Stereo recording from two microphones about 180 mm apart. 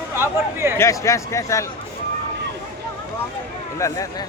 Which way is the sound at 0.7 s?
15° left (ahead or behind).